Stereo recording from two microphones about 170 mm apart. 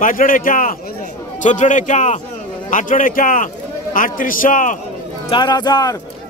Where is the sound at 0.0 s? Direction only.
55° left (ahead or behind).